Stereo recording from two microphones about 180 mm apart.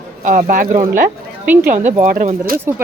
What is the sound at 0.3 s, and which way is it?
Speech, 45° right (ahead or behind).